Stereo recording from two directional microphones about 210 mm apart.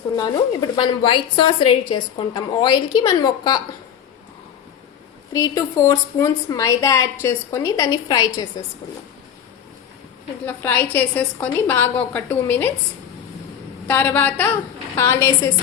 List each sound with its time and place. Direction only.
0.8 s a woman's voice: 25° left (ahead or behind)
5.3 s a woman's voice: 15° left (ahead or behind)
10.4 s a woman's voice: 10° left (ahead or behind)
13.8 s a woman's voice: 10° left (ahead or behind)